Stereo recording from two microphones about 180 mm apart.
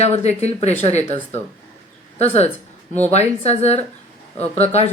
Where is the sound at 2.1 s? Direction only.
35° left (ahead or behind).